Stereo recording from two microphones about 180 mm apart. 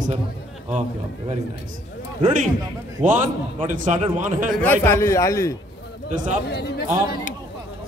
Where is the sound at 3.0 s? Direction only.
45° right (ahead or behind).